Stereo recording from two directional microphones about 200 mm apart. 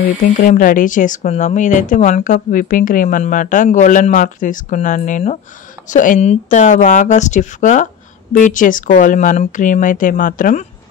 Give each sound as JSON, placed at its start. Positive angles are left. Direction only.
{"t": 0.0, "sound": "speech", "side_deg": 40}